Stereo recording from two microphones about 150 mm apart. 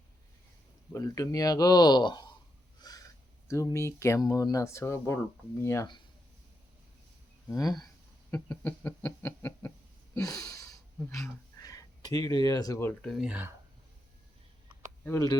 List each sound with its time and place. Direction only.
0.9 s speech: 25° left (ahead or behind)
2.8 s a sound: 25° left (ahead or behind)
3.5 s speech: 20° left (ahead or behind)
7.4 s speech: 25° left (ahead or behind)
8.3 s a sound: 10° left (ahead or behind)
13.0 s speech: 5° left (ahead or behind)
13.2 s speech: 10° right (ahead or behind)